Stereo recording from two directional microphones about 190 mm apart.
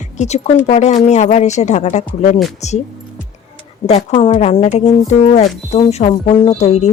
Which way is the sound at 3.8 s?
30° left (ahead or behind).